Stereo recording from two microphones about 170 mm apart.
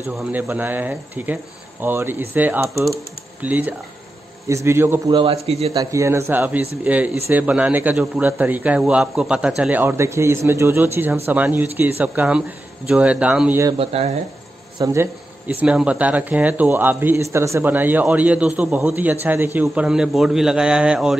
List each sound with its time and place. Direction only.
0.3 s speech: 10° right (ahead or behind)
5.1 s a man's voice: 35° right (ahead or behind)
5.8 s speech: 20° right (ahead or behind)
13.7 s a man's voice: 35° right (ahead or behind)
14.8 s a man's voice: 15° right (ahead or behind)